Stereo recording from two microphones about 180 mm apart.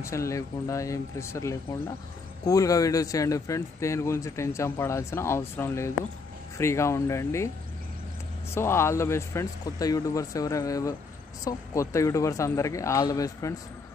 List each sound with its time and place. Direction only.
0.0 s speech: 15° left (ahead or behind)
8.5 s speech: 15° left (ahead or behind)